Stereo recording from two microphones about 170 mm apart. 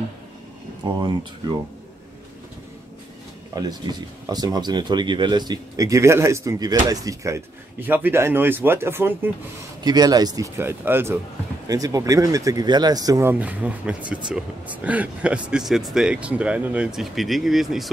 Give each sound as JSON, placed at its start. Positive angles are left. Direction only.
{"t": 0.8, "sound": "speech", "side_deg": -25}
{"t": 3.6, "sound": "speech", "side_deg": -20}
{"t": 9.8, "sound": "speech", "side_deg": -25}